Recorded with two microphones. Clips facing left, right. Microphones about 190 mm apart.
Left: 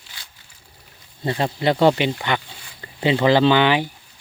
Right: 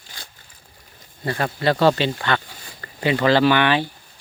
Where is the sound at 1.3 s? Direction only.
20° left (ahead or behind).